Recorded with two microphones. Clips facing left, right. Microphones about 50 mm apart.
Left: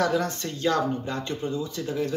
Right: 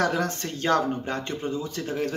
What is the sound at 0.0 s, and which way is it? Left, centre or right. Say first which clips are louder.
Speech: even; right.